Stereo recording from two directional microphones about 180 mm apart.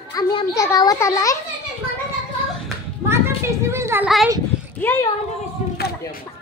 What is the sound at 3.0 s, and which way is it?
Children playing, 15° right (ahead or behind).